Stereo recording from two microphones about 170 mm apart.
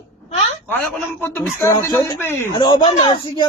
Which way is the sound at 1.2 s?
15° left (ahead or behind).